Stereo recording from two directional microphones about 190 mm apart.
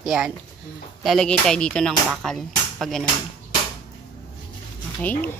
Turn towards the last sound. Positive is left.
turn(degrees=10)  # may be behind; listen again after turning